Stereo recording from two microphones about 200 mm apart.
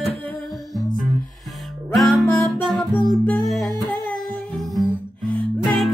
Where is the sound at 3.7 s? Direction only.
20° right (ahead or behind).